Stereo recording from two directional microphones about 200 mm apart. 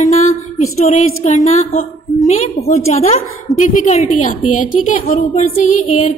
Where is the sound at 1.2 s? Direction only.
35° left (ahead or behind).